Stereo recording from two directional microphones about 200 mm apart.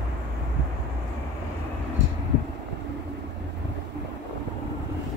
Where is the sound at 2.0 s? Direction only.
65° right (ahead or behind).